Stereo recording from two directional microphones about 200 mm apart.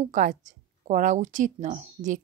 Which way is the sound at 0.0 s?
40° right (ahead or behind).